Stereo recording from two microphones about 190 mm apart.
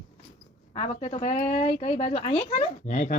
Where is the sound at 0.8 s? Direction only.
35° left (ahead or behind).